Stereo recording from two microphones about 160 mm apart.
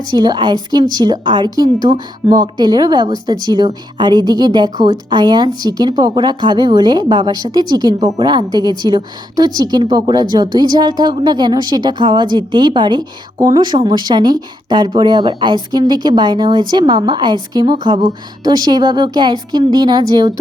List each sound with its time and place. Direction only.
0.1 s a woman's voice: 25° right (ahead or behind)